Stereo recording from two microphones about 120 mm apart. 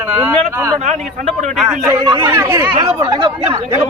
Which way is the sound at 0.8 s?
80° right.